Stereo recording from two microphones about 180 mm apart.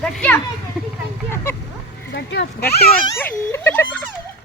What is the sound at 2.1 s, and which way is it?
Speech, 70° left (ahead or behind).